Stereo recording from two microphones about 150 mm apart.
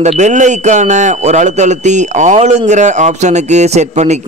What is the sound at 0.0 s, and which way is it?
A man's voice, 50° right (ahead or behind).